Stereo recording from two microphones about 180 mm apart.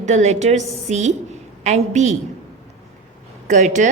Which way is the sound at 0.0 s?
40° right (ahead or behind).